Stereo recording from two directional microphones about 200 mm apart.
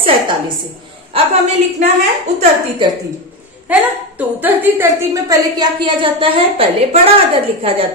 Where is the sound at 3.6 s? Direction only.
10° right (ahead or behind).